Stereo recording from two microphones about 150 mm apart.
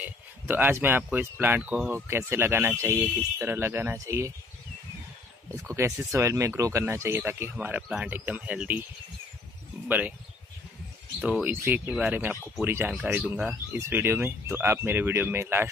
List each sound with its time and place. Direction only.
0.0 s speech: 15° right (ahead or behind)
5.5 s speech: 20° right (ahead or behind)
9.8 s speech: 10° right (ahead or behind)
11.1 s speech: 5° right (ahead or behind)